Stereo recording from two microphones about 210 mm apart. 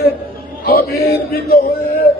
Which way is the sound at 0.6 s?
45° left (ahead or behind).